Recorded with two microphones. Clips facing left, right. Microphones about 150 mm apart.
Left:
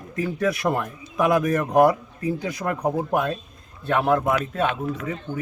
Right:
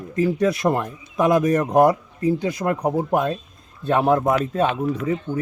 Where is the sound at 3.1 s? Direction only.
25° right (ahead or behind).